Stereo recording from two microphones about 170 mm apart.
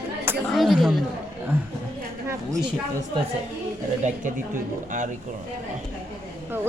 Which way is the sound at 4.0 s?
50° right (ahead or behind).